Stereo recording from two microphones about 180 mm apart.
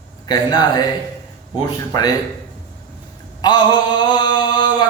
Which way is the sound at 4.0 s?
25° left (ahead or behind).